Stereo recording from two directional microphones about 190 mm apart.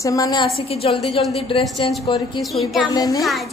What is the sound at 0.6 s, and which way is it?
Speech, 30° left (ahead or behind).